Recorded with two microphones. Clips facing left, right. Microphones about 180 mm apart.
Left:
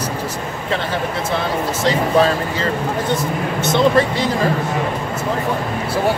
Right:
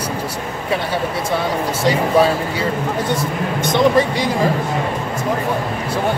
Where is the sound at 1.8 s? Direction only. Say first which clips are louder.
Right 1 dB; 10° right (ahead or behind).